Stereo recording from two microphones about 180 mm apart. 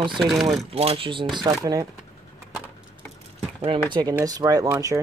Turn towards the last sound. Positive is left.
turn(degrees=-15)  # may be behind; listen again after turning